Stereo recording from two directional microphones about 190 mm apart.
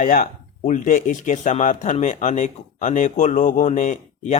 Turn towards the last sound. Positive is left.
turn(degrees=40)  # may be behind; listen again after turning